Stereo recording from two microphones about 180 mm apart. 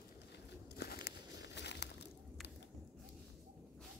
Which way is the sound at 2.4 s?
Centre (ahead or behind).